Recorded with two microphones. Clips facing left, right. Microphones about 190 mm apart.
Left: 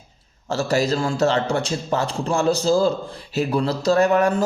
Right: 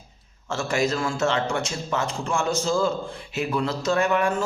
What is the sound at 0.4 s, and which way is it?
Speech, 35° left (ahead or behind).